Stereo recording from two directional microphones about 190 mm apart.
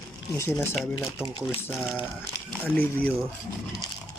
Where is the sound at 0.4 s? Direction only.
15° left (ahead or behind).